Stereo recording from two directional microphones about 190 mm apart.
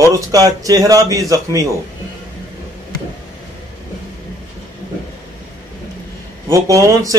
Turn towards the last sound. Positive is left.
turn(degrees=-15)  # may be behind; listen again after turning